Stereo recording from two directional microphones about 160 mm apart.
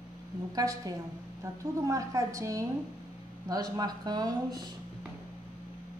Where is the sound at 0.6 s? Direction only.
25° right (ahead or behind).